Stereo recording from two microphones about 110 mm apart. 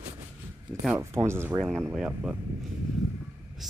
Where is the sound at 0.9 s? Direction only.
25° right (ahead or behind).